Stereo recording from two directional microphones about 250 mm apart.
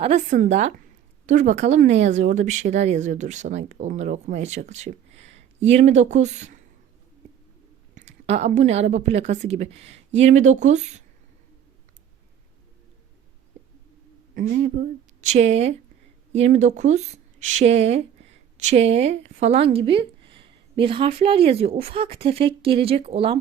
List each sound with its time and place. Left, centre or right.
0.0 s speech: right
7.9 s speech: right
14.3 s speech: right